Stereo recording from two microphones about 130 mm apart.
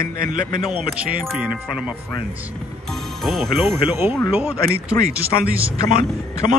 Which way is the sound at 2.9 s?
Centre (ahead or behind).